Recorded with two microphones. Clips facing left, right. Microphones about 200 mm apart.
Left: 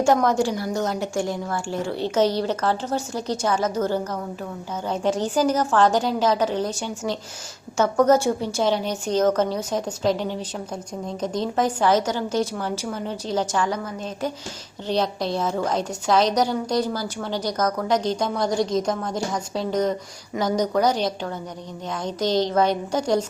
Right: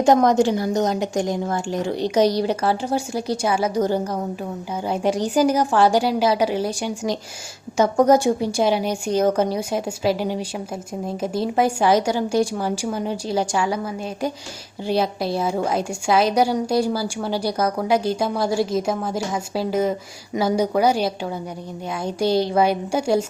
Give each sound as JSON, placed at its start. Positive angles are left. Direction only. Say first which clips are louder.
{"t": 0.0, "sound": "a woman's voice", "louder": "right 4 dB", "side_deg": -20}